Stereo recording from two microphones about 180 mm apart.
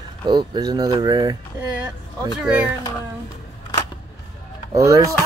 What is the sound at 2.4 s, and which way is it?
Speech, 10° right (ahead or behind).